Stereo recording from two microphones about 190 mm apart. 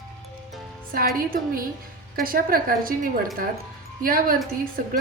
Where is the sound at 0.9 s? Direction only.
50° right (ahead or behind).